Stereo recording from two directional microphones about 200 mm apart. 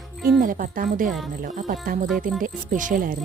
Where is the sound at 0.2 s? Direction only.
45° right (ahead or behind).